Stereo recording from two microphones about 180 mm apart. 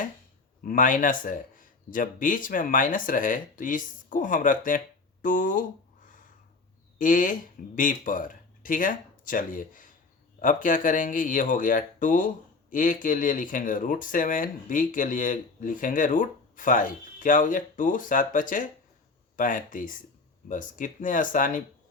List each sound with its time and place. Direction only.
0.6 s speech: 50° left (ahead or behind)
5.2 s a sound: 50° left (ahead or behind)
7.0 s speech: 45° left (ahead or behind)